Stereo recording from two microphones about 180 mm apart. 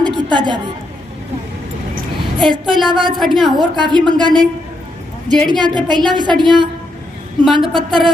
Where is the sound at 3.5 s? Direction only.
25° right (ahead or behind).